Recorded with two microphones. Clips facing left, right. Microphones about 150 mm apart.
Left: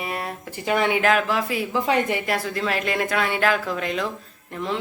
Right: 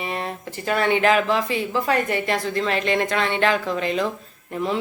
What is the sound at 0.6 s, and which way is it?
Speech, 15° left (ahead or behind).